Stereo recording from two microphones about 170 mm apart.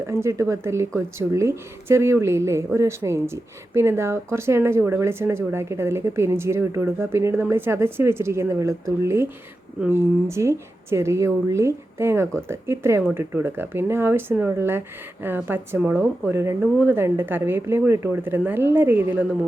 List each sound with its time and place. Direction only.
0.0 s speech: 15° right (ahead or behind)